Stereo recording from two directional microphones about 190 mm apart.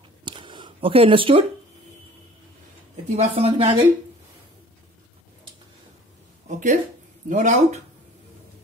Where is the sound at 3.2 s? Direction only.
30° right (ahead or behind).